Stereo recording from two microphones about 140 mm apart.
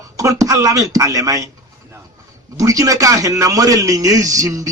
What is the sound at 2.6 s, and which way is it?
A man's voice, 25° right (ahead or behind).